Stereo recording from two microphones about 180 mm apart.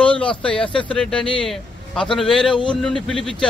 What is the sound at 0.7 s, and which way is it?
Speech, 25° left (ahead or behind).